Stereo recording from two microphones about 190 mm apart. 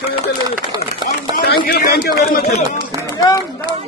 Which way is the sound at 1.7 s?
55° left (ahead or behind).